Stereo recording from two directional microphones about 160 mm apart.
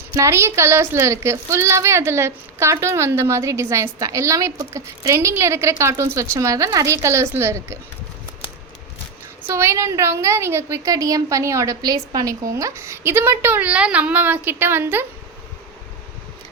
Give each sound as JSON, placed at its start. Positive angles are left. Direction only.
{"t": 0.1, "sound": "a woman's voice", "side_deg": -20}
{"t": 9.5, "sound": "a woman's voice", "side_deg": -15}